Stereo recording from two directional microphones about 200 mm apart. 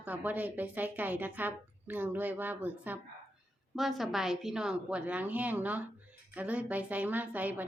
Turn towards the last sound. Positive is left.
turn(degrees=-10)  # may be behind; listen again after turning